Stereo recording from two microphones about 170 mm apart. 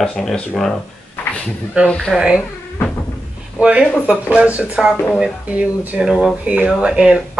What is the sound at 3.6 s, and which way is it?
Speech, 5° right (ahead or behind).